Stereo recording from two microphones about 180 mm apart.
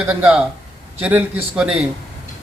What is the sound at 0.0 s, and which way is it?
A man's voice, 5° right (ahead or behind).